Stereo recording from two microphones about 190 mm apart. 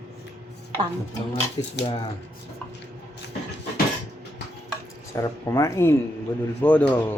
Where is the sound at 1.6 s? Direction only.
20° left (ahead or behind).